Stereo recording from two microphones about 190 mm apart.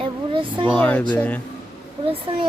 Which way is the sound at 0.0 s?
25° right (ahead or behind).